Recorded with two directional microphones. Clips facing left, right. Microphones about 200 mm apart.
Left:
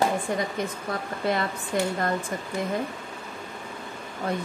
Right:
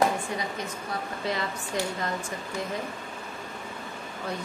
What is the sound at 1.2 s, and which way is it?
Speech, 55° left (ahead or behind).